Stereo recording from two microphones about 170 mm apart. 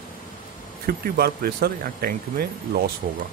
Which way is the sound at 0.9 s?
60° right (ahead or behind).